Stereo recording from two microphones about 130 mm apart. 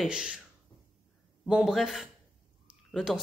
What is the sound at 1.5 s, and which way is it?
A woman's voice, 5° right (ahead or behind).